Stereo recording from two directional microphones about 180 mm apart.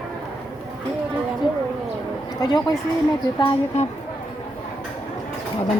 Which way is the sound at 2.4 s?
20° left (ahead or behind).